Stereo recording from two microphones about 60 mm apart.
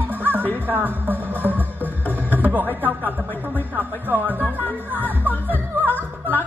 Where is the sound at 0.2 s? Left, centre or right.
Right.